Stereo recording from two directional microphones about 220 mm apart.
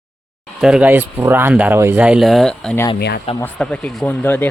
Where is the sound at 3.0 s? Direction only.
45° left (ahead or behind).